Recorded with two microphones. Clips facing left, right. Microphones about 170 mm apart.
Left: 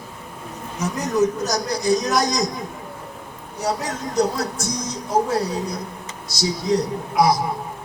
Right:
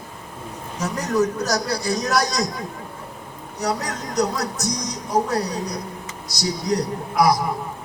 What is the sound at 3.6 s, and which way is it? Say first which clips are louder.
Speech: even; 30° left (ahead or behind).